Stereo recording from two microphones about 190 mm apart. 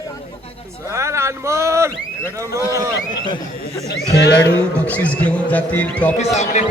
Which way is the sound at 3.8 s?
60° left (ahead or behind).